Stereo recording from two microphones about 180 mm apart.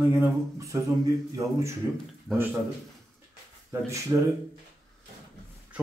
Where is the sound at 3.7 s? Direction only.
15° right (ahead or behind).